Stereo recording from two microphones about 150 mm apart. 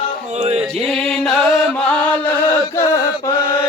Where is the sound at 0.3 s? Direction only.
45° right (ahead or behind).